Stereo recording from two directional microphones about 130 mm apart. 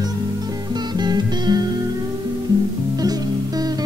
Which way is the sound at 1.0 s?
30° right (ahead or behind).